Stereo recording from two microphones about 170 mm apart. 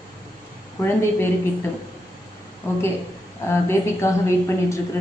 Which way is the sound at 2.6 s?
15° left (ahead or behind).